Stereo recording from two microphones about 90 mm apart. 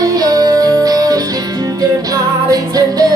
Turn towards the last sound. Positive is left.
turn(degrees=-45)  # may be behind; listen again after turning